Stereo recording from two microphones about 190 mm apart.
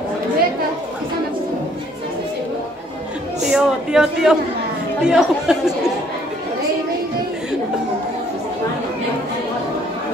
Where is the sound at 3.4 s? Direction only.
5° right (ahead or behind).